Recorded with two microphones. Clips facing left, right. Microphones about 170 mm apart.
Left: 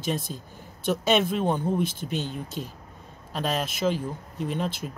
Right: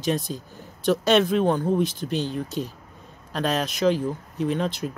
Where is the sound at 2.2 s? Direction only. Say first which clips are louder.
Right 5 dB; 35° right (ahead or behind).